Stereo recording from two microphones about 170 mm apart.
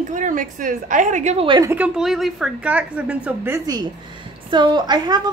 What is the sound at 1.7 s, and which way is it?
A woman's voice, 5° right (ahead or behind).